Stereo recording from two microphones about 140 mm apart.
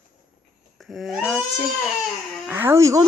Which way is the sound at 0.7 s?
Centre (ahead or behind).